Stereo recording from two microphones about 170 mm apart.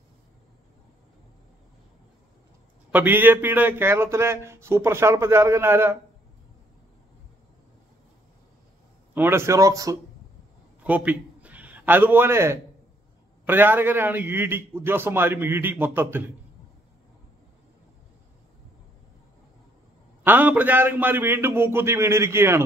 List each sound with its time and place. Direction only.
2.9 s a man's voice: 10° right (ahead or behind)
9.1 s a man's voice: 15° right (ahead or behind)
10.8 s a man's voice: 10° right (ahead or behind)
20.2 s a man's voice: 10° right (ahead or behind)